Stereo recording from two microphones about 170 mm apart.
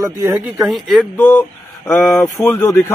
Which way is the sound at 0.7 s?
Centre (ahead or behind).